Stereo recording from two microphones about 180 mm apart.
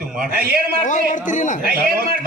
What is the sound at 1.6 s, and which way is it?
Speech, 55° right (ahead or behind).